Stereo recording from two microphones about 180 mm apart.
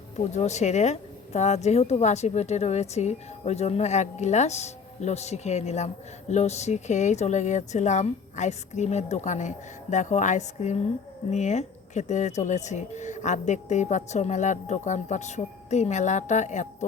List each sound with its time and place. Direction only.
0.3 s a woman's voice: 40° left (ahead or behind)